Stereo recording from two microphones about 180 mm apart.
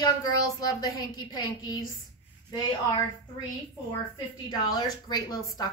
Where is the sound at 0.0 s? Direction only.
20° left (ahead or behind).